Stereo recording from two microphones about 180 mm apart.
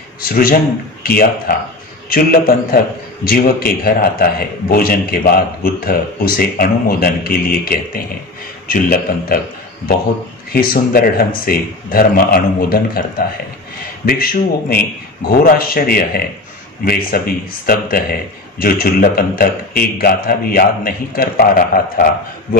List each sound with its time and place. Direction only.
0.2 s a man's voice: 55° left (ahead or behind)
10.5 s a man's voice: 55° left (ahead or behind)
14.0 s a man's voice: 55° left (ahead or behind)